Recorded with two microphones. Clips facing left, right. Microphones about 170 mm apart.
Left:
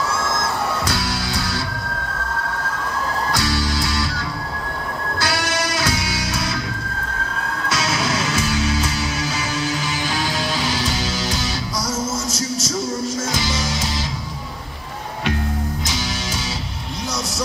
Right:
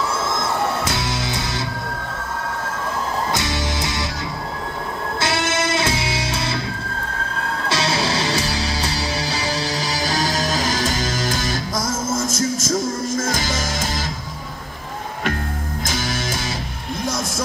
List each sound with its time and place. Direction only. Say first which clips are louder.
0.8 s music: even; 20° right (ahead or behind)
3.3 s music: left 1 dB; 20° right (ahead or behind)
5.2 s music: right 2 dB; 25° right (ahead or behind)
7.6 s music: right 1 dB; 30° right (ahead or behind); by 13.8 s 50° right (ahead or behind)